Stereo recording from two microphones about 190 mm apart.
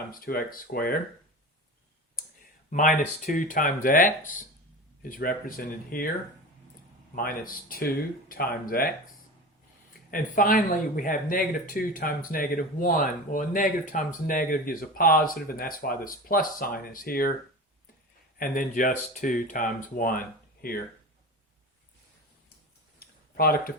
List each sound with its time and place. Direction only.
0.1 s speech: 50° left (ahead or behind)
2.6 s speech: 45° left (ahead or behind)
7.2 s speech: 50° left (ahead or behind)
10.1 s speech: 45° left (ahead or behind)
18.3 s speech: 45° left (ahead or behind)
23.0 s a sound: 50° left (ahead or behind)